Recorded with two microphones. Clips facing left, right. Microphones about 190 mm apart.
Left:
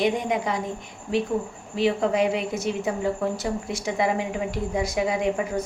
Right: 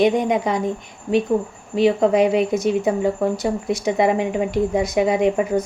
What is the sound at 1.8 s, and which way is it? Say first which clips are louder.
A woman's voice: right 6 dB; 20° right (ahead or behind).